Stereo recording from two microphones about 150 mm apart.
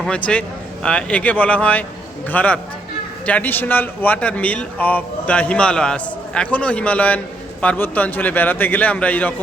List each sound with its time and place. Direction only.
0.3 s a man's voice: 5° left (ahead or behind)